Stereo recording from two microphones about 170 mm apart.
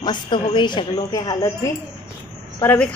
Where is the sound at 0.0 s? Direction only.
25° left (ahead or behind).